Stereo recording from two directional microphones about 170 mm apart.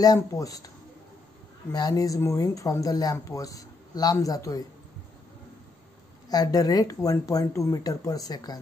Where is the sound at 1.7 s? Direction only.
20° left (ahead or behind).